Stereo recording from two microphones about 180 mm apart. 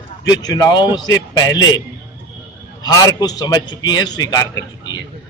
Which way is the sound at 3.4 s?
25° left (ahead or behind).